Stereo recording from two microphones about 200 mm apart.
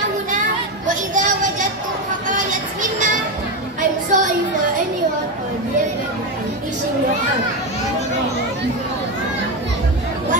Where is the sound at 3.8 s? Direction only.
40° right (ahead or behind).